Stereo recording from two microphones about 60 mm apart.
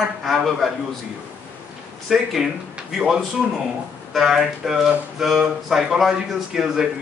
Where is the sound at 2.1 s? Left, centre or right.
Centre.